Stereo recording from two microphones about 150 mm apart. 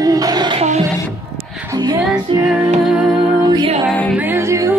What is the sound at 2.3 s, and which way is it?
Music, 30° right (ahead or behind).